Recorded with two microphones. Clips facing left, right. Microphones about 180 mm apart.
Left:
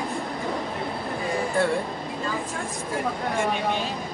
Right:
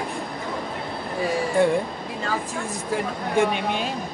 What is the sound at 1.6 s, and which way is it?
Speech, 15° right (ahead or behind).